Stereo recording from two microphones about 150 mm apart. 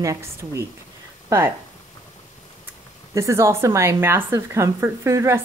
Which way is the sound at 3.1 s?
20° right (ahead or behind).